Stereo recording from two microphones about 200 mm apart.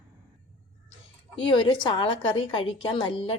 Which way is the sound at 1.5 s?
25° left (ahead or behind).